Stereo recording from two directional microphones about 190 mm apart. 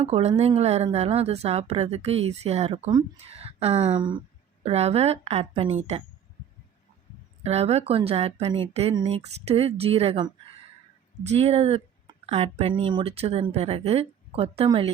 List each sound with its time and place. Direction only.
0.0 s speech: 35° right (ahead or behind)
7.4 s speech: 35° right (ahead or behind)